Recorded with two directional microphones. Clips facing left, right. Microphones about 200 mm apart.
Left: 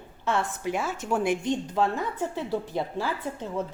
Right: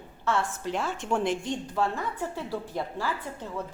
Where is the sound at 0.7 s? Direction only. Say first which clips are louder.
Even; 5° left (ahead or behind).